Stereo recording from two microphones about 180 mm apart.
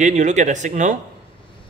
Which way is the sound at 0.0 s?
40° right (ahead or behind).